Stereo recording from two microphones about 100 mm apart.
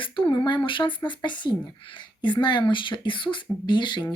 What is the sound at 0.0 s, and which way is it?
Speech, 55° left (ahead or behind).